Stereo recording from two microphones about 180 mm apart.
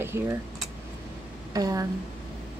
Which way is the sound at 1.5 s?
20° right (ahead or behind).